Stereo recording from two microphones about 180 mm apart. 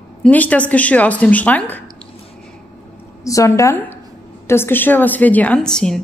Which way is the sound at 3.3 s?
15° left (ahead or behind).